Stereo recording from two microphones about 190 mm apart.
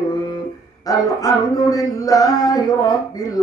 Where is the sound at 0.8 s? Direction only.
20° left (ahead or behind).